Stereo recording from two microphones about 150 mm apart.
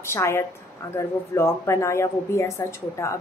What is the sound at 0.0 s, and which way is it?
Speech, 15° left (ahead or behind).